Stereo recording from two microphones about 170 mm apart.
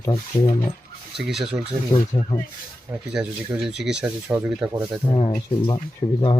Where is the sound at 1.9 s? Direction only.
25° left (ahead or behind).